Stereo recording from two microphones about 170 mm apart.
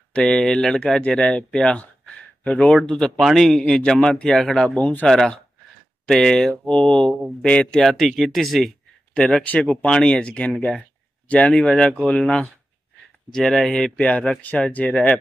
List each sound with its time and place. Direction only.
0.1 s a man's voice: 5° left (ahead or behind)